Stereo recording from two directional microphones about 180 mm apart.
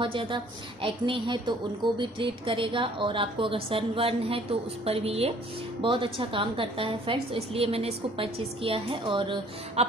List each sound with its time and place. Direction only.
0.0 s a woman's voice: 30° right (ahead or behind)